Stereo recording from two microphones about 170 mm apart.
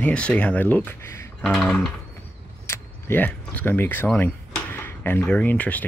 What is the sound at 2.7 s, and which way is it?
Speech, 10° left (ahead or behind).